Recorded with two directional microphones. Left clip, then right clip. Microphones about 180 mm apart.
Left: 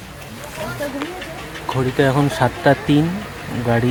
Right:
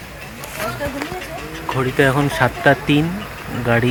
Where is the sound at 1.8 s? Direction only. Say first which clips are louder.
Right 1 dB; 10° left (ahead or behind).